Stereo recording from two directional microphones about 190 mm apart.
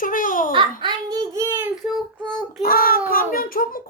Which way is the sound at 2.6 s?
50° left (ahead or behind).